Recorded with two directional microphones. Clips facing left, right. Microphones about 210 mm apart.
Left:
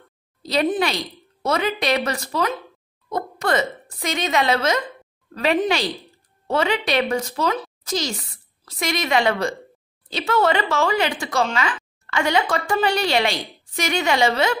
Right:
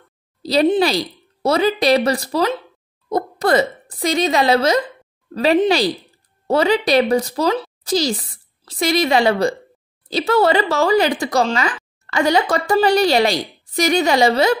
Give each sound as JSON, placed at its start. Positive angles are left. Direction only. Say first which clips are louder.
{"t": 0.4, "sound": "speech", "louder": "right 6 dB", "side_deg": -35}